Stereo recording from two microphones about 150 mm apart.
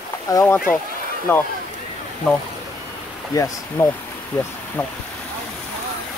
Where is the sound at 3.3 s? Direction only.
20° left (ahead or behind).